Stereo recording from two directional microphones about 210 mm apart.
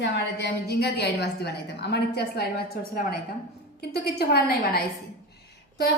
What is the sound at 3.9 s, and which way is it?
A woman's voice, 50° left (ahead or behind).